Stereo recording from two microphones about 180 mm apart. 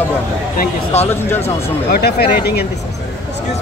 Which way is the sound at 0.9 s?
35° left (ahead or behind).